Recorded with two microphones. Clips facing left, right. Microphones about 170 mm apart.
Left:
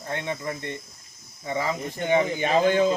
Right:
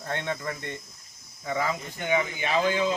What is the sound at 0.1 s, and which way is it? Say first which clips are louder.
Speech: left 1 dB; 15° left (ahead or behind).